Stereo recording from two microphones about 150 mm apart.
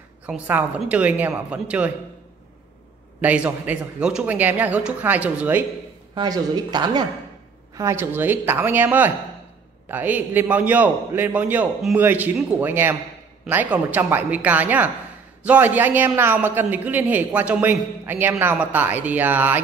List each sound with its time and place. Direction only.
0.3 s a man's voice: 10° right (ahead or behind)
3.2 s a man's voice: 10° right (ahead or behind)
6.1 s a man's voice: 25° right (ahead or behind); by 19.6 s 10° right (ahead or behind)